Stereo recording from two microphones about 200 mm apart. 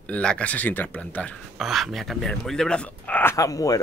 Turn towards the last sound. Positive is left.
turn(degrees=15)  # may be behind; listen again after turning